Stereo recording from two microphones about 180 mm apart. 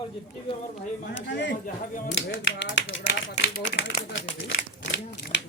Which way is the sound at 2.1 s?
90° left.